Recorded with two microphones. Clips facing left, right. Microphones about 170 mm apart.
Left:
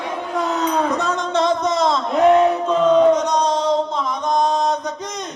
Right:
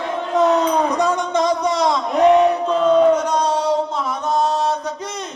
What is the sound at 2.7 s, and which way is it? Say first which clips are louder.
Chant: left 1 dB; 10° right (ahead or behind).